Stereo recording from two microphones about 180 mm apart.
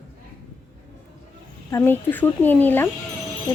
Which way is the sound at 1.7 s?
15° left (ahead or behind).